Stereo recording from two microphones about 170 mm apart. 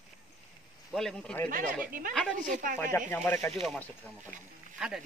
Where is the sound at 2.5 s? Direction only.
50° right (ahead or behind).